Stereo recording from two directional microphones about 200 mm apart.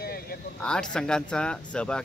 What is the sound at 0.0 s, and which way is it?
Vehicle, 50° left (ahead or behind).